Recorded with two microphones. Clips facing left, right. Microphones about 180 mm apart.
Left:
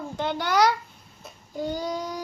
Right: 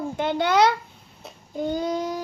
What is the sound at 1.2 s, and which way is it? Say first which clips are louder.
Child singing: right 3 dB; 25° right (ahead or behind).